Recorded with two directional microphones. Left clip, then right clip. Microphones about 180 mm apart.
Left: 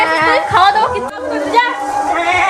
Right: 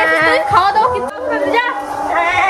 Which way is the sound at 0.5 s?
90° right.